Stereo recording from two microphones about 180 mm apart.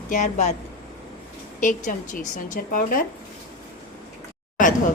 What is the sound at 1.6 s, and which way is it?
A woman's voice, 45° left (ahead or behind).